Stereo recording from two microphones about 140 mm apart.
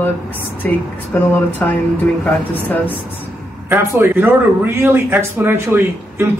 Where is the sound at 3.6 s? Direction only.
15° right (ahead or behind).